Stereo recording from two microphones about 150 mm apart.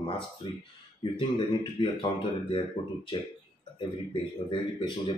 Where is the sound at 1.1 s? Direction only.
35° left (ahead or behind).